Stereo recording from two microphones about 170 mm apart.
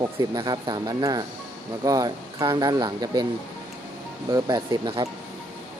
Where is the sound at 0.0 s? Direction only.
25° right (ahead or behind).